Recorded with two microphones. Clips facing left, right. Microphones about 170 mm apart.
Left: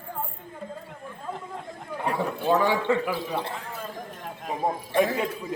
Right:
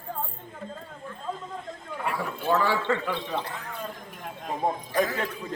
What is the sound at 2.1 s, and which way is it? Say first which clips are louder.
A man's voice: left 3 dB; 20° left (ahead or behind).